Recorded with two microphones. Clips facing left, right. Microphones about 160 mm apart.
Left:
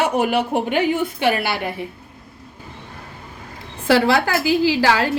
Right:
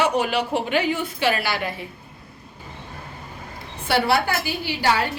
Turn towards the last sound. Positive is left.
turn(degrees=90)